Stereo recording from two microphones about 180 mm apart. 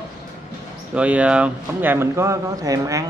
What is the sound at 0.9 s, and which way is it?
Speech, 5° right (ahead or behind).